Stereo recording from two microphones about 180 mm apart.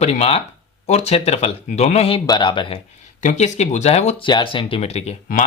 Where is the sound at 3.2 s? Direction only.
40° left (ahead or behind).